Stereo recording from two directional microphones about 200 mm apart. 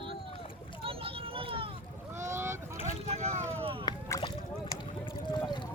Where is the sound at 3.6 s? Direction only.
25° right (ahead or behind).